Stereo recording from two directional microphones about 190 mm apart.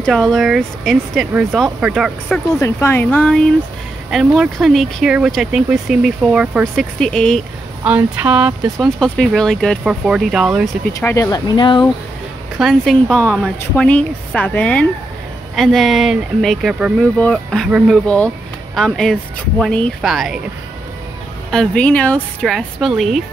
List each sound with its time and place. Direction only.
0.0 s speech: 5° left (ahead or behind)
2.6 s speech: 15° left (ahead or behind); by 10.8 s 5° right (ahead or behind)
10.9 s speech: 15° left (ahead or behind)
12.5 s speech: centre (ahead or behind)
21.5 s speech: 5° left (ahead or behind)